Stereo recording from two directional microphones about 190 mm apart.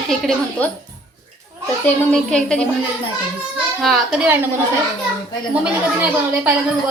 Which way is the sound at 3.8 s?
Centre (ahead or behind).